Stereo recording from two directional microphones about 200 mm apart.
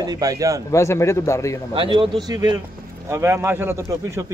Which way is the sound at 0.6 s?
15° left (ahead or behind).